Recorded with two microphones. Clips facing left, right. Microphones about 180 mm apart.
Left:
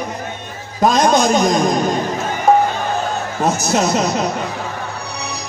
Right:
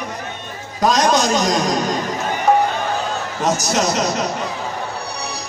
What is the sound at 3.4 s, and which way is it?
Speech, 55° left (ahead or behind).